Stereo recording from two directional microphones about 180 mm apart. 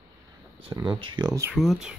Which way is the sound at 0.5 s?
25° right (ahead or behind).